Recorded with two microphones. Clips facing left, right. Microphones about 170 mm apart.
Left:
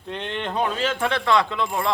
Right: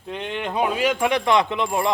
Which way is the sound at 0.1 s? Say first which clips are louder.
Right 1 dB; 5° right (ahead or behind).